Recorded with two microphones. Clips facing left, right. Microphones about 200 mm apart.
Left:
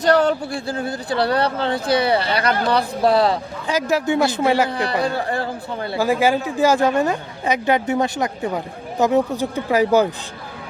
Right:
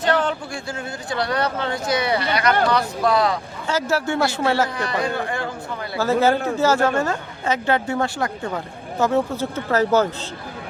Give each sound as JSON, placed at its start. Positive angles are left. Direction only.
{"t": 0.0, "sound": "speech", "side_deg": 40}
{"t": 3.7, "sound": "speech", "side_deg": 15}
{"t": 4.7, "sound": "speech", "side_deg": 35}
{"t": 6.0, "sound": "speech", "side_deg": 10}